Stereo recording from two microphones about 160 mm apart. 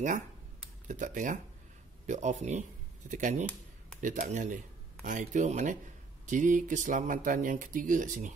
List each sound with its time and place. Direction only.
0.8 s speech: 50° right (ahead or behind)